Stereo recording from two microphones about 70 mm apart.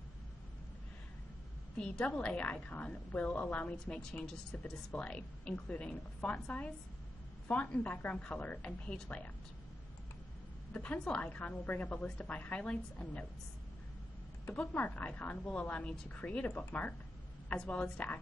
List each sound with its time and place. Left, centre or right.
1.8 s a woman's voice: centre
10.7 s a woman's voice: centre
14.5 s a woman's voice: centre